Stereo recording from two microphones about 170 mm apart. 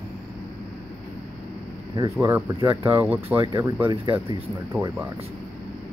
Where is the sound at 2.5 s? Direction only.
30° right (ahead or behind).